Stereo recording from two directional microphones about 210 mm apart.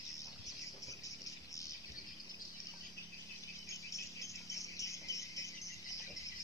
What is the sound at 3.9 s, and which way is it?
Cricket, 15° left (ahead or behind).